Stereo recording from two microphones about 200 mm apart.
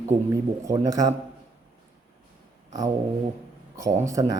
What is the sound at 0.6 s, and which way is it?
Speech, 15° right (ahead or behind).